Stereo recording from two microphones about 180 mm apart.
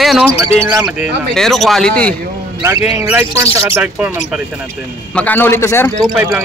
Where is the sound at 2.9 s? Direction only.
10° right (ahead or behind).